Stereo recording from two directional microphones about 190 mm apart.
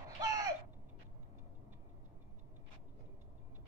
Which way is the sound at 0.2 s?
20° right (ahead or behind).